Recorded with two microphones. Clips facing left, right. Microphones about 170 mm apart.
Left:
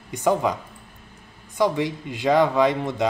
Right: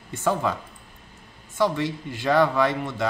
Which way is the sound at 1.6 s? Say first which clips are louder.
Left 2 dB; 15° left (ahead or behind).